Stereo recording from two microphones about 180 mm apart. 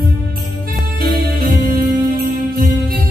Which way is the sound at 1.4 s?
50° right (ahead or behind).